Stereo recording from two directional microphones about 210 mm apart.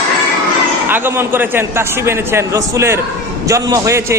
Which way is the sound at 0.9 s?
10° right (ahead or behind).